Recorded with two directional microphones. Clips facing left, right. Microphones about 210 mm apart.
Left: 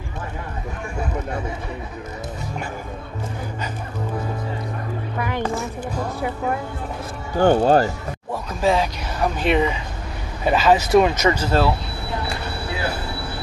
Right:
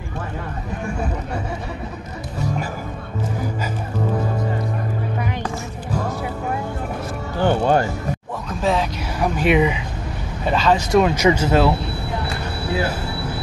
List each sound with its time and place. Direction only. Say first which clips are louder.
5.2 s a sound: left 2 dB; 55° left (ahead or behind)
7.3 s speech: left 3 dB; 40° left (ahead or behind)
8.5 s a woman's voice: left 1 dB; centre (ahead or behind)
9.4 s speech: right 3 dB; 10° right (ahead or behind)
10.4 s speech: left 2 dB; 5° left (ahead or behind)
11.3 s speech: right 3 dB; 20° right (ahead or behind)